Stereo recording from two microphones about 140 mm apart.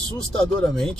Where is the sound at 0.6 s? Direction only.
5° left (ahead or behind).